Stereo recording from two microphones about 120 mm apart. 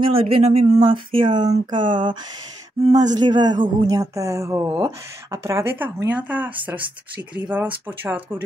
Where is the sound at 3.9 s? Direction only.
25° right (ahead or behind).